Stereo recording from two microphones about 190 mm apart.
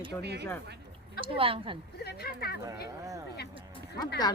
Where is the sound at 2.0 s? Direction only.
55° left (ahead or behind).